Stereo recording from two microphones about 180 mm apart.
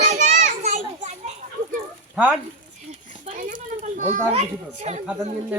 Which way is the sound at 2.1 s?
10° right (ahead or behind).